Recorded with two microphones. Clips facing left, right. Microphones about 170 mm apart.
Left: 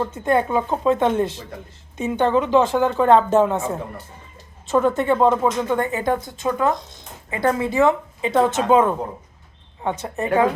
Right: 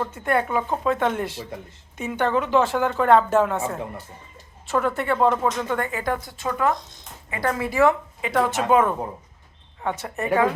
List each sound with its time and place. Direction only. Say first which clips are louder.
0.0 s a woman's voice: left 4 dB; 20° left (ahead or behind)